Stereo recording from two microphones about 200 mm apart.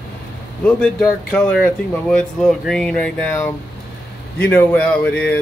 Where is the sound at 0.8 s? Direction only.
5° left (ahead or behind).